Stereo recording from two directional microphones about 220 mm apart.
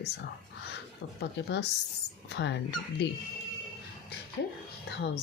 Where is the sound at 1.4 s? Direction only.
55° left (ahead or behind).